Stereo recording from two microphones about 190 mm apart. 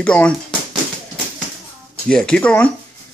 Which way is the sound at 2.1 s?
5° left (ahead or behind).